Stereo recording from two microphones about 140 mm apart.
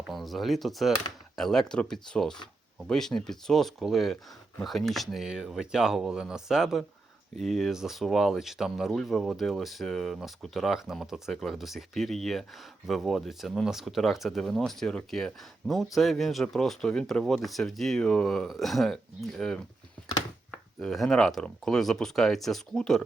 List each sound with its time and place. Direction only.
0.1 s speech: centre (ahead or behind)
20.7 s speech: centre (ahead or behind)